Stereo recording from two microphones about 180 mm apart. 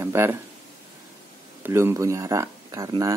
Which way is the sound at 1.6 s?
15° right (ahead or behind).